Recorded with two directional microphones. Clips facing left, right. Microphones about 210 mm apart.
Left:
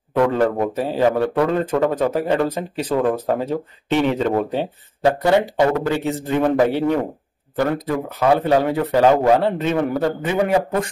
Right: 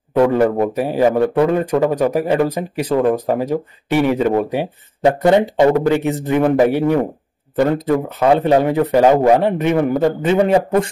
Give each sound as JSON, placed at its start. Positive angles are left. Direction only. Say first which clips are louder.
{"t": 0.1, "sound": "a man's voice", "louder": "right 4 dB", "side_deg": -15}
{"t": 7.5, "sound": "a man's voice", "louder": "right 5 dB", "side_deg": -25}